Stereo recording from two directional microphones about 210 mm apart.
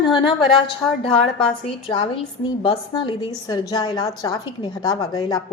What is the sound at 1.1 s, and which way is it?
Speech, 5° left (ahead or behind).